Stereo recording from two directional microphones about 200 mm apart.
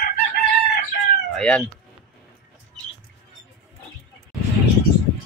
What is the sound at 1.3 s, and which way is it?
Speech, 5° left (ahead or behind).